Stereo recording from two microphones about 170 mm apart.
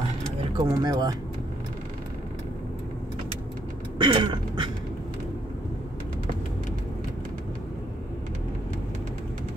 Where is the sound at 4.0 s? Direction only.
25° right (ahead or behind).